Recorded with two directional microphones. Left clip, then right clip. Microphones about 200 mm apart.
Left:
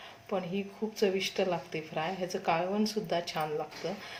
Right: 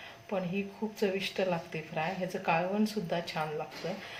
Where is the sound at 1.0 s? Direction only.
30° left (ahead or behind).